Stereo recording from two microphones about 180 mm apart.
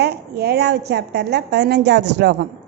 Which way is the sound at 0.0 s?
65° right (ahead or behind).